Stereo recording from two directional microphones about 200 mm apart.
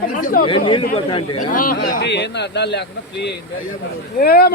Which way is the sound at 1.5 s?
45° left (ahead or behind).